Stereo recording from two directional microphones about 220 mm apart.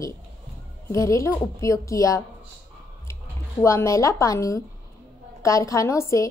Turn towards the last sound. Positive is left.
turn(degrees=15)  # may be behind; listen again after turning